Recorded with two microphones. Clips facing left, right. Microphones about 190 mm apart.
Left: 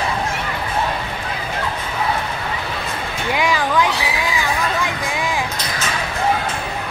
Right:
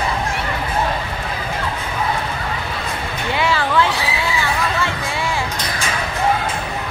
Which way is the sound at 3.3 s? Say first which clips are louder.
Even; 15° left (ahead or behind).